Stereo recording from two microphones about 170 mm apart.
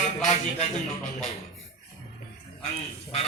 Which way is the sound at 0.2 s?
40° left (ahead or behind).